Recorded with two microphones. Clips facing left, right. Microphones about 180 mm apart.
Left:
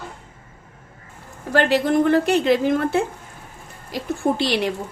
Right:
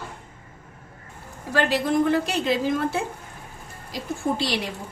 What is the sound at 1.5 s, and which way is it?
A woman's voice, 60° left (ahead or behind).